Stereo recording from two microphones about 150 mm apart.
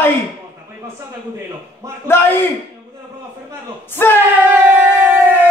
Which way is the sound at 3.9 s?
15° left (ahead or behind).